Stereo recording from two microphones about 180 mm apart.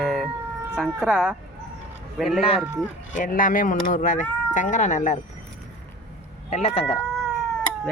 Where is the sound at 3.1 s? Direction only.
45° left (ahead or behind).